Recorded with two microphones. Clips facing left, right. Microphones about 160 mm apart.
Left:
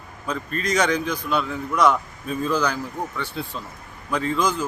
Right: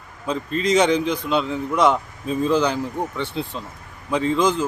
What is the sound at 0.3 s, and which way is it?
A man's voice, 25° right (ahead or behind).